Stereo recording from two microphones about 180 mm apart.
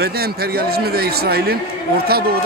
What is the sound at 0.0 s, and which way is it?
Speech, 60° right (ahead or behind).